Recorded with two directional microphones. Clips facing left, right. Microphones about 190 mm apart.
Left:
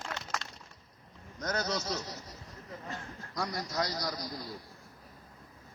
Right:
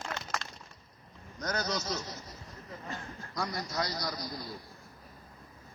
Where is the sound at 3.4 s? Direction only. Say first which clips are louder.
Left 1 dB; 40° left (ahead or behind).